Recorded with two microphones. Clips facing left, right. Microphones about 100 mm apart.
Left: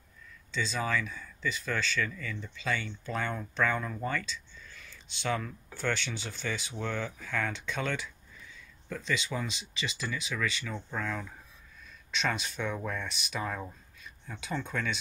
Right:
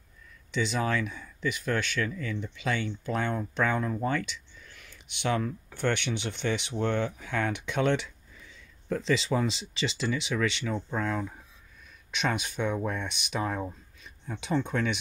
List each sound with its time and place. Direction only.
0.5 s speech: 20° right (ahead or behind)
2.4 s speech: 20° right (ahead or behind)
4.8 s a sound: 15° right (ahead or behind)
5.8 s speech: 20° right (ahead or behind)
12.1 s speech: 15° right (ahead or behind)